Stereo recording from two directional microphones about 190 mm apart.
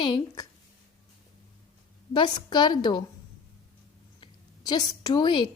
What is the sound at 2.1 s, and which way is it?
Speech, 25° left (ahead or behind).